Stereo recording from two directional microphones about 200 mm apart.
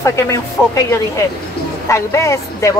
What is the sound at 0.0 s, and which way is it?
Speech, 15° left (ahead or behind).